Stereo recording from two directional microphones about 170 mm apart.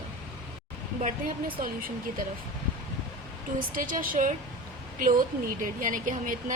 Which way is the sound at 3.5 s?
55° right (ahead or behind).